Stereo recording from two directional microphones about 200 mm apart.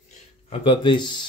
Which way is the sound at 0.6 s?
25° left (ahead or behind).